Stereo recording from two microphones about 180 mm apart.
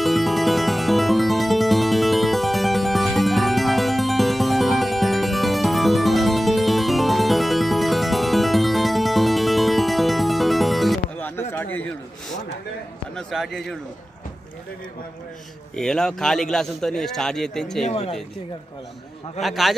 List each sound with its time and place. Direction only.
0.0 s music: centre (ahead or behind)
11.5 s a sound: 10° left (ahead or behind)
13.1 s a man's voice: centre (ahead or behind)
15.7 s a man's voice: 5° left (ahead or behind)
17.8 s speech: 35° left (ahead or behind)
19.4 s a man's voice: centre (ahead or behind)